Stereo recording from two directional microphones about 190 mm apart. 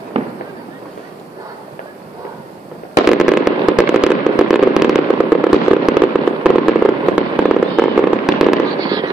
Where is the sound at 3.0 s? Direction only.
5° right (ahead or behind).